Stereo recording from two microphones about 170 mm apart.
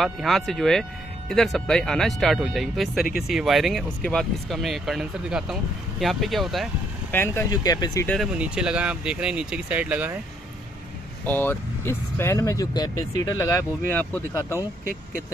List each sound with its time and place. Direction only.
0.0 s speech: centre (ahead or behind)
7.1 s speech: 15° left (ahead or behind)
8.4 s speech: 5° right (ahead or behind)
11.2 s speech: 10° left (ahead or behind)